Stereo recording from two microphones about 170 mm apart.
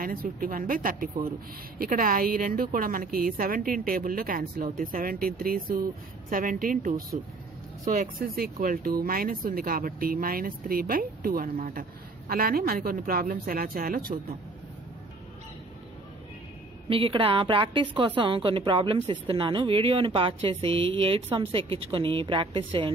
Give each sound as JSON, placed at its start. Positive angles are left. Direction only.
{"t": 0.0, "sound": "speech", "side_deg": -55}
{"t": 16.9, "sound": "a woman's voice", "side_deg": -30}